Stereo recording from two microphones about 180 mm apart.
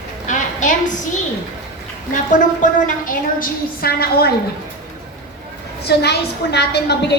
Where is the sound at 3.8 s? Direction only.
60° left (ahead or behind).